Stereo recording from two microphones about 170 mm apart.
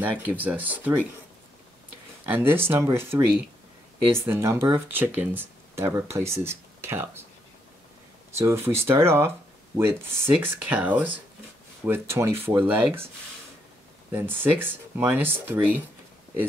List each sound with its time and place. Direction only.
0.0 s speech: 10° right (ahead or behind)
2.2 s speech: 10° right (ahead or behind)
8.4 s speech: 15° right (ahead or behind)
14.1 s speech: 10° right (ahead or behind)